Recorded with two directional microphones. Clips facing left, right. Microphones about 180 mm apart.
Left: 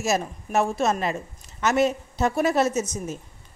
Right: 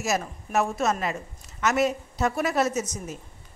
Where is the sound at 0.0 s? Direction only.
30° left (ahead or behind).